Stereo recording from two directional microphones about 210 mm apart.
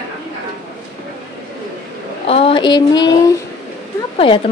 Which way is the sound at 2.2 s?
30° left (ahead or behind).